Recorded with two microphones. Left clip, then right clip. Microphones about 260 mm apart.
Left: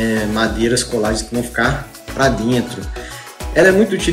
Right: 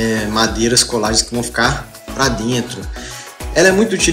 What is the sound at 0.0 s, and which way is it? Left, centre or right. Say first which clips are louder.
Speech: right 1 dB; centre.